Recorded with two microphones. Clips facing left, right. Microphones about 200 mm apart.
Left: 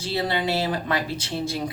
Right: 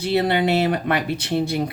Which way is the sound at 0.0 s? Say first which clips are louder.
Right 6 dB; 65° right (ahead or behind).